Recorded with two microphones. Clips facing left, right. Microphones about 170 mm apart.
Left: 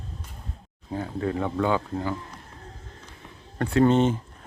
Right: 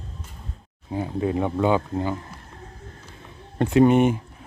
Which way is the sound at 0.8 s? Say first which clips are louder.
Right 3 dB; 15° right (ahead or behind).